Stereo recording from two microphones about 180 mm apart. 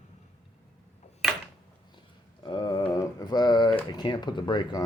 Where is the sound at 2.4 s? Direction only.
25° left (ahead or behind).